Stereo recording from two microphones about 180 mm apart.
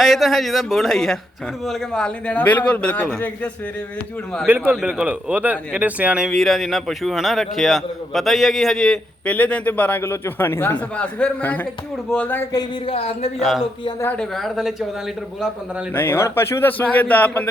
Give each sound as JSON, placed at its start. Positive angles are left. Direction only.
{"t": 0.0, "sound": "a man's voice", "side_deg": 0}
{"t": 4.4, "sound": "a man's voice", "side_deg": -10}
{"t": 12.5, "sound": "speech", "side_deg": 25}
{"t": 13.4, "sound": "speech", "side_deg": 0}
{"t": 15.9, "sound": "a man's voice", "side_deg": 10}